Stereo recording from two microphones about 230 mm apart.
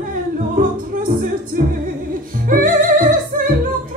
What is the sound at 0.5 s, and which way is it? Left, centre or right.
Music, right.